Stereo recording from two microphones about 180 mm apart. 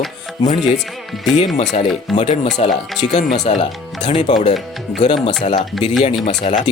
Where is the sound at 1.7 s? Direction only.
40° left (ahead or behind).